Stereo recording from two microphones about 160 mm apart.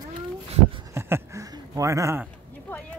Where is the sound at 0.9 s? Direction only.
15° right (ahead or behind).